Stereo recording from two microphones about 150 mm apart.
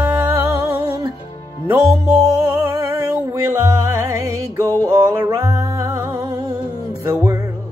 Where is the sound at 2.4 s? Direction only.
15° right (ahead or behind).